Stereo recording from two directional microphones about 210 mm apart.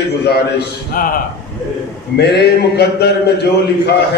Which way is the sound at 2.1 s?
50° left (ahead or behind).